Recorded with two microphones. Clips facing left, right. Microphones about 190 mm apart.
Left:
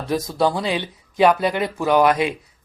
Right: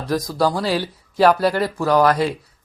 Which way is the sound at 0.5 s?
5° right (ahead or behind).